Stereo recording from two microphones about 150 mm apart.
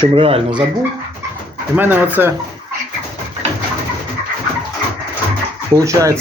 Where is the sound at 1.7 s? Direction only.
10° right (ahead or behind).